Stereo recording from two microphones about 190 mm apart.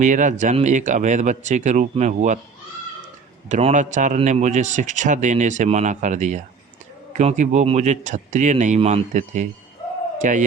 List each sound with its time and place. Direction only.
0.0 s speech: 40° right (ahead or behind)
3.5 s a man's voice: 40° right (ahead or behind)